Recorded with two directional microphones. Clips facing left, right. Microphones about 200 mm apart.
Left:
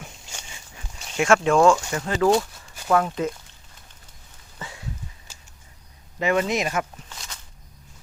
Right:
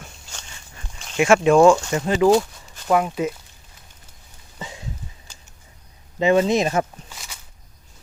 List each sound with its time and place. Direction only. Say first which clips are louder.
0.0 s dog: left 1 dB; 10° left (ahead or behind)
1.1 s speech: right 4 dB; 10° right (ahead or behind)
5.3 s a sound: right 1 dB; 5° left (ahead or behind)
6.1 s speech: right 5 dB; 25° right (ahead or behind)
7.1 s walk: even; 10° right (ahead or behind)